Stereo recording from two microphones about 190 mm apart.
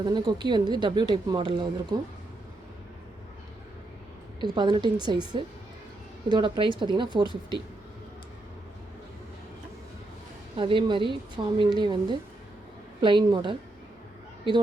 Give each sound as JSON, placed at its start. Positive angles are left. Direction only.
{"t": 0.0, "sound": "speech", "side_deg": -25}
{"t": 4.4, "sound": "speech", "side_deg": -25}
{"t": 6.3, "sound": "speech", "side_deg": -25}
{"t": 10.6, "sound": "speech", "side_deg": -25}